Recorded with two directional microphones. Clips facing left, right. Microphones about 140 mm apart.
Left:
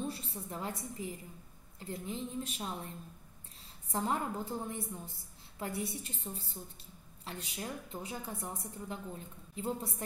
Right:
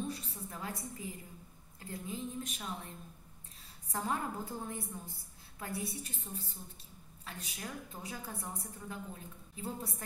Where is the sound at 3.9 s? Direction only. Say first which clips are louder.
Left 2 dB; 25° left (ahead or behind).